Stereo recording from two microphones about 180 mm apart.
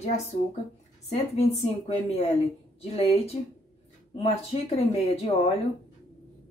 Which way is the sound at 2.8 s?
35° left (ahead or behind).